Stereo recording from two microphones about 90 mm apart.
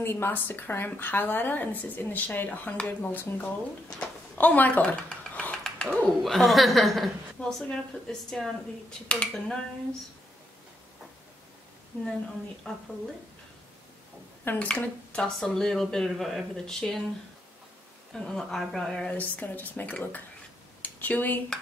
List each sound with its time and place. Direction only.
0.0 s speech: 25° left (ahead or behind)
11.9 s speech: 20° left (ahead or behind)
12.7 s speech: 10° left (ahead or behind)
14.4 s speech: 20° left (ahead or behind)
18.1 s speech: 5° left (ahead or behind)
19.1 s speech: 15° left (ahead or behind)